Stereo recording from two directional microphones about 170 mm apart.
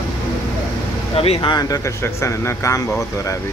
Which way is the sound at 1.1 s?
35° left (ahead or behind).